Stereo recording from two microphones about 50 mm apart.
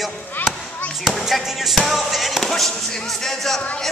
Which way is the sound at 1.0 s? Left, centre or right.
Centre.